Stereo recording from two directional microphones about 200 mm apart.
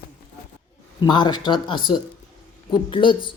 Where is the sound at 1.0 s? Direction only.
20° left (ahead or behind).